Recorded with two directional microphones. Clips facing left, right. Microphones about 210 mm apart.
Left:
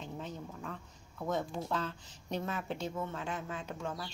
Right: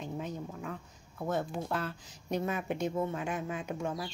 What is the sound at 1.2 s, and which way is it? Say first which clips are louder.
A woman's voice: right 2 dB; 10° right (ahead or behind).